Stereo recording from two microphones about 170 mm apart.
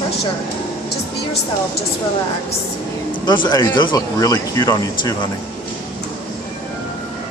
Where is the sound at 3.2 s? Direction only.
25° left (ahead or behind).